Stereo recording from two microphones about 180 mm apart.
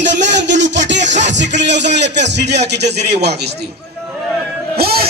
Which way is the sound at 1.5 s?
75° right (ahead or behind).